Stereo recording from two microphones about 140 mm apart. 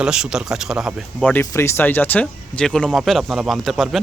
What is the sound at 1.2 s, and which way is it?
Speech, 15° left (ahead or behind).